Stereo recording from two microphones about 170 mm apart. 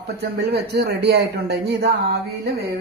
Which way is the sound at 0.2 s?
75° right (ahead or behind).